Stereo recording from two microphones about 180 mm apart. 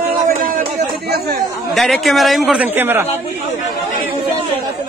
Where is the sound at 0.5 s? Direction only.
55° right (ahead or behind).